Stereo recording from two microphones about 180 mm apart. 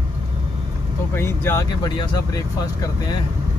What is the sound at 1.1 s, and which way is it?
Speech, 15° left (ahead or behind).